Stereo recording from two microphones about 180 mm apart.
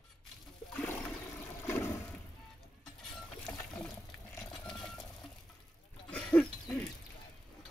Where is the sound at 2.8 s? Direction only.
5° left (ahead or behind).